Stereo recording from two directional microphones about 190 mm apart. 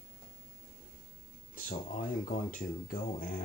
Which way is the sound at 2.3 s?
45° left (ahead or behind).